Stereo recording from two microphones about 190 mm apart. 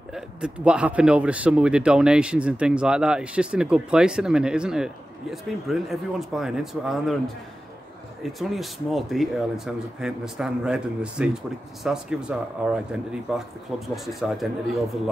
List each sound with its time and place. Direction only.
0.1 s speech: 5° right (ahead or behind)